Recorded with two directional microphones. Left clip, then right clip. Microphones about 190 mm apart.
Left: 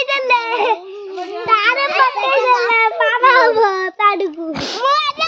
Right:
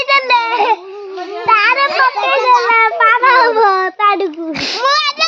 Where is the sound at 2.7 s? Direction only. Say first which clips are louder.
Right 4 dB; 35° right (ahead or behind).